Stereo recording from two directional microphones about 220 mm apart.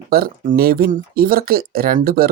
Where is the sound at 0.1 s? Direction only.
40° right (ahead or behind).